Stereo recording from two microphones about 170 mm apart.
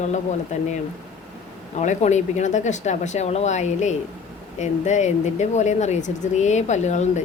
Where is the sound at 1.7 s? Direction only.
45° left (ahead or behind).